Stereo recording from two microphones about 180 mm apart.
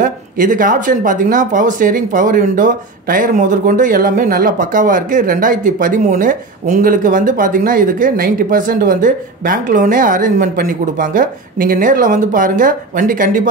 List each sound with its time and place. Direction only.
0.0 s speech: 50° right (ahead or behind)